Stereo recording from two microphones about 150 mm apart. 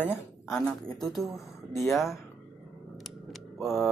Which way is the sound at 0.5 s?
5° left (ahead or behind).